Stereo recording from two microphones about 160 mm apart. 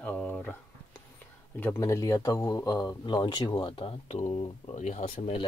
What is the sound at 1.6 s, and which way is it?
Speech, 15° left (ahead or behind).